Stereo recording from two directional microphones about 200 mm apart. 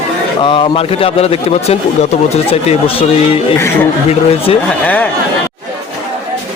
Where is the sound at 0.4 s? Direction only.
25° left (ahead or behind).